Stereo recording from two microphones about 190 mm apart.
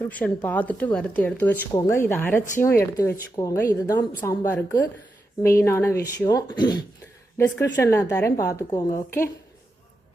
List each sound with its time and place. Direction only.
0.1 s speech: 10° left (ahead or behind)
5.4 s speech: 50° left (ahead or behind)
5.6 s speech: 15° left (ahead or behind)